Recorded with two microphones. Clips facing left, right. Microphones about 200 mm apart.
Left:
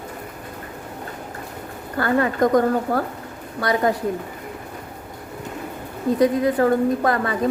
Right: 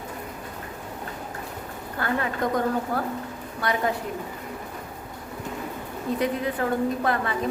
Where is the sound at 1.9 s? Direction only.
45° left (ahead or behind).